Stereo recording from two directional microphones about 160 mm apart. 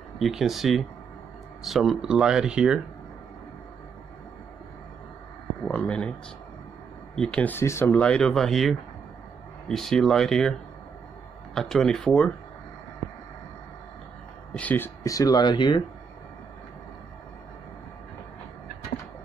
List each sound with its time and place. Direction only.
0.2 s speech: centre (ahead or behind)
5.7 s speech: 5° left (ahead or behind)
7.2 s speech: 5° left (ahead or behind)
11.5 s speech: 5° left (ahead or behind)
14.5 s speech: 10° left (ahead or behind)
15.0 s speech: 20° left (ahead or behind)